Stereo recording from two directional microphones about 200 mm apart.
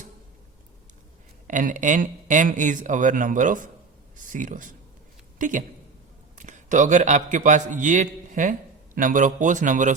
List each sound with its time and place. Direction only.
1.5 s a man's voice: 40° right (ahead or behind)